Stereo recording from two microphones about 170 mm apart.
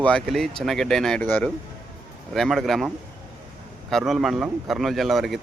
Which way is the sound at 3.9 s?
Centre (ahead or behind).